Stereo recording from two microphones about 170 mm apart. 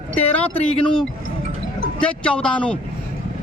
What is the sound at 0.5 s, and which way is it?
Speech, 35° left (ahead or behind).